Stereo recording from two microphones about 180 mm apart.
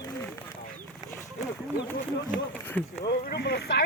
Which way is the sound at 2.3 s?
10° left (ahead or behind).